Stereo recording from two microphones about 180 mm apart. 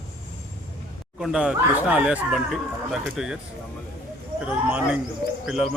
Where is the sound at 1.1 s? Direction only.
5° right (ahead or behind).